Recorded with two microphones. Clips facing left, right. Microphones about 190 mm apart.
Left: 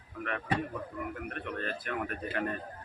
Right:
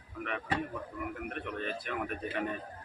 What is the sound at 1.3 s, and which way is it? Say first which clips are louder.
Speech: even; centre (ahead or behind).